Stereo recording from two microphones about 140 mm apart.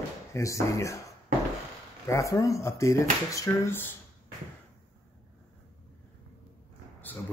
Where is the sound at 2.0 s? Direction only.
20° left (ahead or behind).